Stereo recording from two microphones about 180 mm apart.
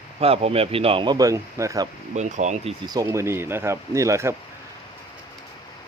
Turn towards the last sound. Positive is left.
turn(degrees=-15)  # may be behind; listen again after turning